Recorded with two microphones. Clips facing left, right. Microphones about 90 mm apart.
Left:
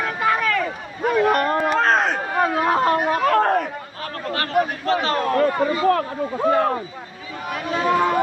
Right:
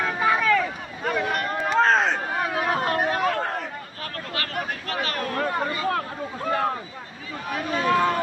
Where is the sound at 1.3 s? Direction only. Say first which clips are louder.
Left 7 dB; 45° left (ahead or behind).